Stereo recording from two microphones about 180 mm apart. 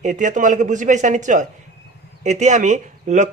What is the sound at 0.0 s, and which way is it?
A woman's voice, 45° right (ahead or behind).